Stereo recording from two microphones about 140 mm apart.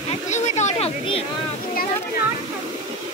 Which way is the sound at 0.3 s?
55° left (ahead or behind).